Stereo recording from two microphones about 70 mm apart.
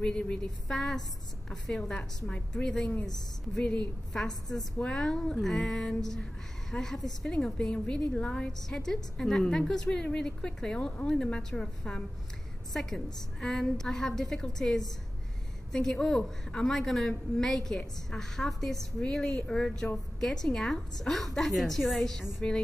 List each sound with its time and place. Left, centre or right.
0.0 s a woman's voice: centre
3.6 s a woman's voice: left
4.1 s a woman's voice: centre
22.4 s a woman's voice: centre